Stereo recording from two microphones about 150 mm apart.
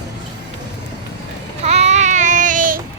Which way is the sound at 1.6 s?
45° right (ahead or behind).